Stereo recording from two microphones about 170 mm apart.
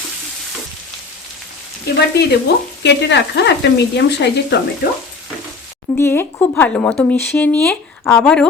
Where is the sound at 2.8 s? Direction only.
85° left.